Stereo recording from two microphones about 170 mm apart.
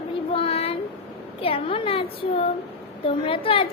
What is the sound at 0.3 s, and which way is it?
Child singing, 35° left (ahead or behind).